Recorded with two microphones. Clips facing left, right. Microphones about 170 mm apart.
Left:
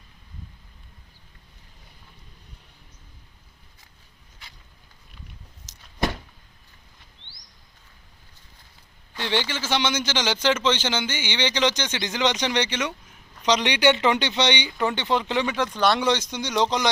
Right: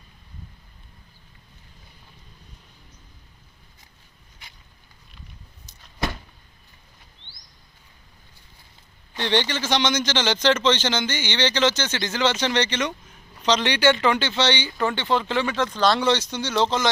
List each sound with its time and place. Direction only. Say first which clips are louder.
5.7 s vehicle: even; 90° left
9.1 s a man's voice: right 3 dB; 5° left (ahead or behind)